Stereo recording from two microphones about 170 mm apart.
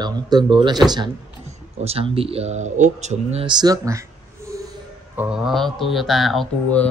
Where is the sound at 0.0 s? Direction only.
25° right (ahead or behind).